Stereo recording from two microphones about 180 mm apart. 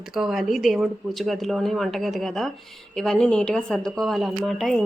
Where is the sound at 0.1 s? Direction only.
Centre (ahead or behind).